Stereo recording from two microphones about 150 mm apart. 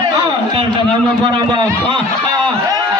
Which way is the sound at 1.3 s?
35° right (ahead or behind).